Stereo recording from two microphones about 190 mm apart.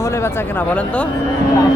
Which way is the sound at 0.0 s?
15° left (ahead or behind).